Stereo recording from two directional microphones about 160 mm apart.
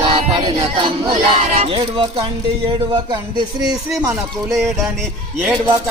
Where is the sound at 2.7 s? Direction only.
30° right (ahead or behind).